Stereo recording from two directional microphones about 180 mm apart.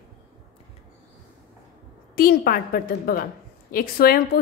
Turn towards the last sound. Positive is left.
turn(degrees=55)  # may be behind; listen again after turning